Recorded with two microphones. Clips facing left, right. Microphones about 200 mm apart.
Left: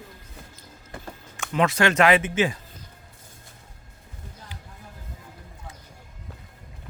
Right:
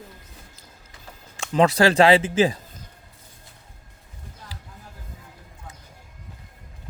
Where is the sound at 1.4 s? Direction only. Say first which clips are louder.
Right 4 dB; 35° right (ahead or behind).